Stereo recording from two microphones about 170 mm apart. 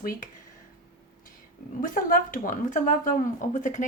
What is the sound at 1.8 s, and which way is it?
Speech, 55° left (ahead or behind).